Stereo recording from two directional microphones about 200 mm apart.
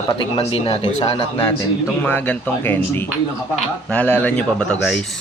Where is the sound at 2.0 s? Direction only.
10° left (ahead or behind).